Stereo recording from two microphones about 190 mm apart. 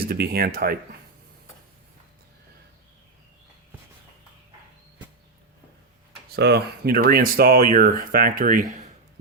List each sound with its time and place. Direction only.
0.0 s speech: 55° right (ahead or behind)
6.3 s speech: 60° right (ahead or behind)